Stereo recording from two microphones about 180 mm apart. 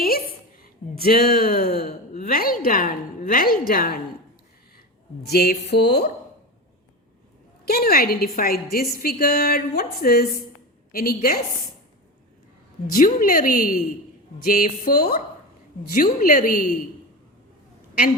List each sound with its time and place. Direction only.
0.6 s speech: 55° left (ahead or behind)
1.9 s a sound: 50° left (ahead or behind)
3.7 s a woman's voice: 50° left (ahead or behind)
5.2 s a woman's voice: 60° left (ahead or behind)
7.6 s a woman's voice: 60° left (ahead or behind)
12.9 s a woman's voice: 50° left (ahead or behind)